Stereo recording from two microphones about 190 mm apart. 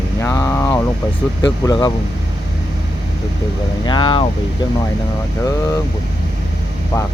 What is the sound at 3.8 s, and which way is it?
Speech, 25° left (ahead or behind).